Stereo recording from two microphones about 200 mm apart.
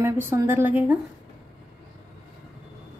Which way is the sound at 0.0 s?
10° right (ahead or behind).